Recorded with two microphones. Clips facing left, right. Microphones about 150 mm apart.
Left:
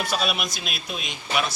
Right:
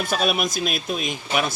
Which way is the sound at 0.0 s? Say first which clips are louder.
Right 4 dB; 45° right (ahead or behind).